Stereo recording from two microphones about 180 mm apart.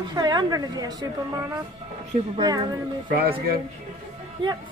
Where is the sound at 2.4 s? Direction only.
20° right (ahead or behind).